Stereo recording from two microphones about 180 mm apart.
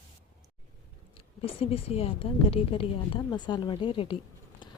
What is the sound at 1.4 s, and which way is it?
A woman's voice, 30° left (ahead or behind).